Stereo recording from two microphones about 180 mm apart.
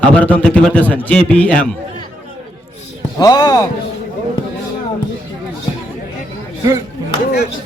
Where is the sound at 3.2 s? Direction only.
20° left (ahead or behind).